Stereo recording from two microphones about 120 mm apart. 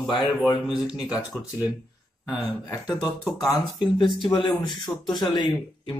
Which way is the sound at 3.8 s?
40° left (ahead or behind).